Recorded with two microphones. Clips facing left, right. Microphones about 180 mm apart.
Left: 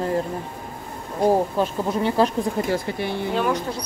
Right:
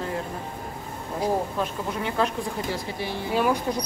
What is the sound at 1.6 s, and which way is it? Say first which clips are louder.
Speech: left 6 dB; 35° left (ahead or behind).